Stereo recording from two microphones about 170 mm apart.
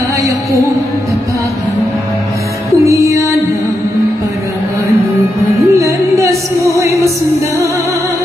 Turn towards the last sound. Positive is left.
turn(degrees=-15)  # may be behind; listen again after turning